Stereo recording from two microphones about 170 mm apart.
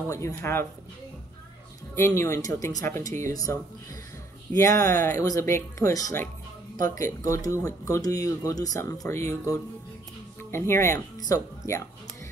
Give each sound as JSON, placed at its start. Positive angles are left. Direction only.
{"t": 0.1, "sound": "speech", "side_deg": 15}
{"t": 2.0, "sound": "speech", "side_deg": 15}
{"t": 4.6, "sound": "speech", "side_deg": 20}
{"t": 10.5, "sound": "speech", "side_deg": 15}